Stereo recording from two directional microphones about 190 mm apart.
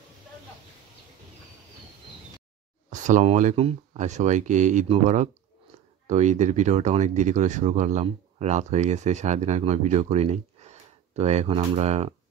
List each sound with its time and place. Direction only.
2.9 s speech: 40° right (ahead or behind)